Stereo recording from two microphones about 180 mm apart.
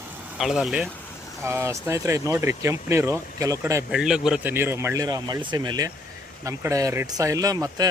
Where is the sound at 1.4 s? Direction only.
15° right (ahead or behind).